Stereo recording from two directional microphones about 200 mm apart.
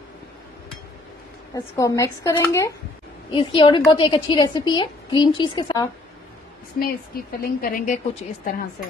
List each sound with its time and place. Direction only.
1.5 s a woman's voice: 15° left (ahead or behind)
3.3 s a woman's voice: 25° left (ahead or behind)
6.8 s speech: 45° left (ahead or behind)